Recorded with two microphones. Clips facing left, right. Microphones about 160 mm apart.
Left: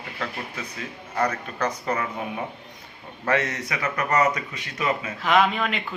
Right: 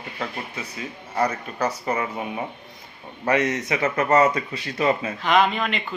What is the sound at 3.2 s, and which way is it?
Speech, 15° right (ahead or behind).